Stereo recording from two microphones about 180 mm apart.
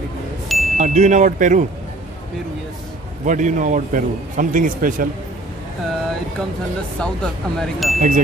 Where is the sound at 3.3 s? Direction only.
45° right (ahead or behind).